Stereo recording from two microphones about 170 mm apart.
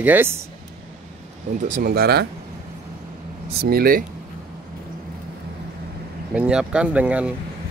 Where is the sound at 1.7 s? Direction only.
60° right (ahead or behind).